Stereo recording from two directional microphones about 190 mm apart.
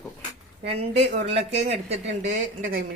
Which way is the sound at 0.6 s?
35° right (ahead or behind).